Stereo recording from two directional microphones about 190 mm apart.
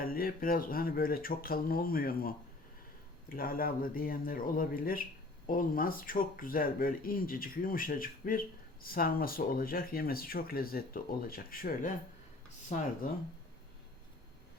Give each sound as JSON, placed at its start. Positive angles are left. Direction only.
{"t": 0.0, "sound": "speech", "side_deg": 50}